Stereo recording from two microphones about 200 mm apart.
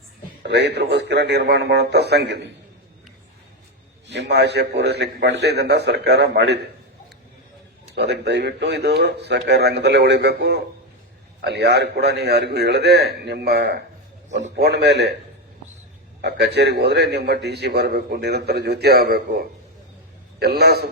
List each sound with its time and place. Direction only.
0.4 s a man's voice: 60° right (ahead or behind)
4.1 s a man's voice: 55° right (ahead or behind)
7.9 s a man's voice: 55° right (ahead or behind)
16.6 s a man's voice: 55° right (ahead or behind)